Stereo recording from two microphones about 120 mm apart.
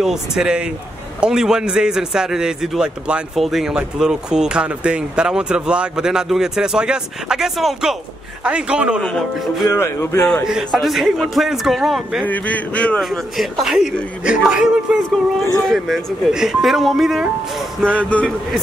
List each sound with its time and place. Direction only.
0.0 s a man's voice: 5° right (ahead or behind)
9.7 s speech: 20° left (ahead or behind)
10.4 s a man's voice: 5° right (ahead or behind)
12.3 s speech: 15° left (ahead or behind)
13.0 s a man's voice: centre (ahead or behind)
17.8 s speech: 10° left (ahead or behind)